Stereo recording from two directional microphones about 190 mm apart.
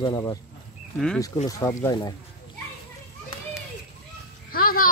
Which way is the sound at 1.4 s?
15° left (ahead or behind).